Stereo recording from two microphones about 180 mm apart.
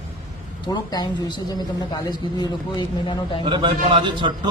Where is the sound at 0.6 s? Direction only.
20° left (ahead or behind).